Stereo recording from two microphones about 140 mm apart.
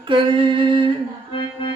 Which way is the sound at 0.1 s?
35° right (ahead or behind).